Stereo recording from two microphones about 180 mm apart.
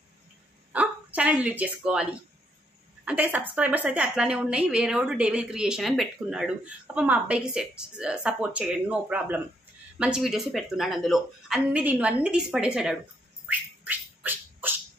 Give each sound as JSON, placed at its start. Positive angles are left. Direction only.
{"t": 0.7, "sound": "speech", "side_deg": -5}
{"t": 3.1, "sound": "a woman's voice", "side_deg": -10}
{"t": 13.5, "sound": "squawk", "side_deg": -10}